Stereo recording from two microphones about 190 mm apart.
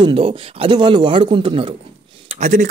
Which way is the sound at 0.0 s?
30° right (ahead or behind).